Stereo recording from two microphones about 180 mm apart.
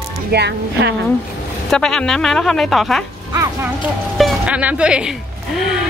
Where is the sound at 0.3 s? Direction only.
70° right (ahead or behind).